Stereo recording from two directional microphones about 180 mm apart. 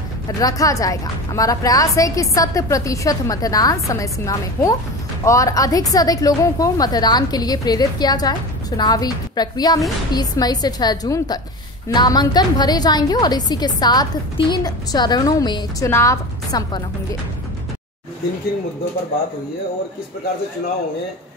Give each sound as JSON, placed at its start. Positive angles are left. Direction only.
{"t": 0.4, "sound": "a woman's voice", "side_deg": 20}